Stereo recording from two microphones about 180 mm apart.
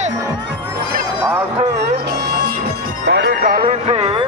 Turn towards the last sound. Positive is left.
turn(degrees=-30)  # may be behind; listen again after turning